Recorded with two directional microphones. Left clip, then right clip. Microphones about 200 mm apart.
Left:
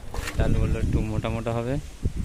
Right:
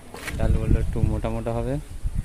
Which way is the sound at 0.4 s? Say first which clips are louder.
Even; 10° right (ahead or behind).